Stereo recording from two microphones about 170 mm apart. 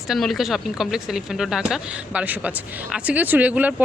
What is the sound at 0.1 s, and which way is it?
Speech, centre (ahead or behind).